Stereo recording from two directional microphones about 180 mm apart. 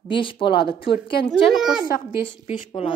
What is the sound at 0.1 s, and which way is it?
Speech, 30° left (ahead or behind).